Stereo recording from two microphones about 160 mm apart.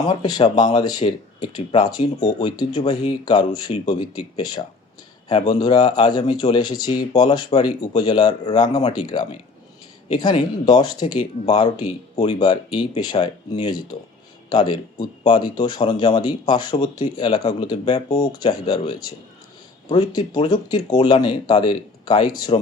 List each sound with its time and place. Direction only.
0.1 s speech: 25° left (ahead or behind)